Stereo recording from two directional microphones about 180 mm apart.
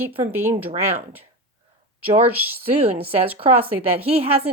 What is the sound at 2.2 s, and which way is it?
Speech, 10° right (ahead or behind).